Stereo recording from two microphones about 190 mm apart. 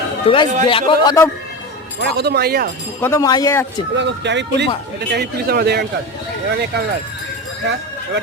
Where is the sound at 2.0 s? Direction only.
60° right (ahead or behind).